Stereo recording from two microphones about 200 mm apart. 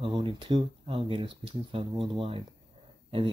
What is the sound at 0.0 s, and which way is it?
Speech, 25° right (ahead or behind).